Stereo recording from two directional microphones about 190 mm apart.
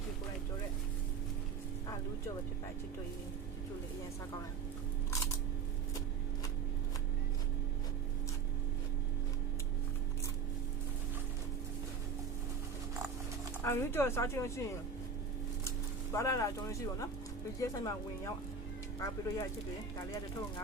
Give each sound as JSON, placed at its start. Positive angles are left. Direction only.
{"t": 13.7, "sound": "speech", "side_deg": 15}
{"t": 16.1, "sound": "speech", "side_deg": 15}